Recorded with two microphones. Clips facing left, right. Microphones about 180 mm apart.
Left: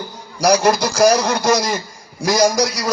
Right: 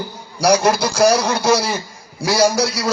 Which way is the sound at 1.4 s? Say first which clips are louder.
Even; 10° right (ahead or behind).